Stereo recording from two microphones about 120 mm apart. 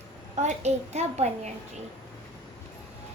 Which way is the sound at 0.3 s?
75° right (ahead or behind).